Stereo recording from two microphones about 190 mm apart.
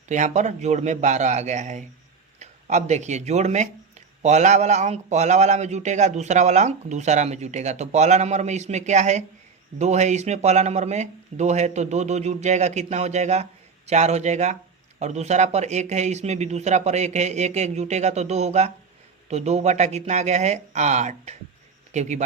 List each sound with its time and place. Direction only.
0.1 s speech: 40° right (ahead or behind)